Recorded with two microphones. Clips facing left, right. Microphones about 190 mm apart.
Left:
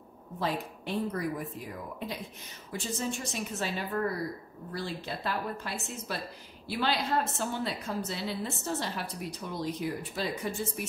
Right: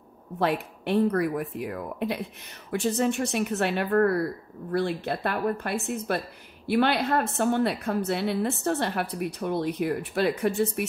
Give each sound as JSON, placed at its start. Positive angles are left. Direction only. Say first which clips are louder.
{"t": 0.4, "sound": "a woman's voice", "louder": "right 7 dB", "side_deg": -65}